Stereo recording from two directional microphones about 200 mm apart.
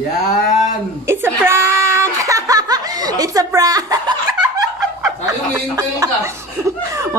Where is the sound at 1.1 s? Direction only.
10° right (ahead or behind).